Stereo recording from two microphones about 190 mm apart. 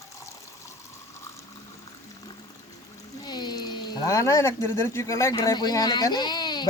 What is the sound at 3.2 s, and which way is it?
Speech, 20° left (ahead or behind).